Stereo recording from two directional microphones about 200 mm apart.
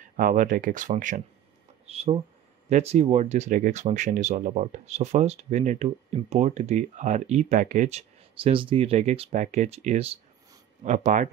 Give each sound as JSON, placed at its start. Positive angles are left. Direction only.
{"t": 0.0, "sound": "speech", "side_deg": -40}
{"t": 1.9, "sound": "speech", "side_deg": -30}